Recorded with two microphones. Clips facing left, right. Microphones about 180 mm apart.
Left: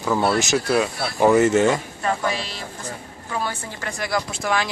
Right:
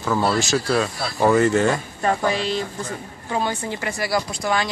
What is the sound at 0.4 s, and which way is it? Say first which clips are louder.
Speech: left 1 dB; 20° left (ahead or behind).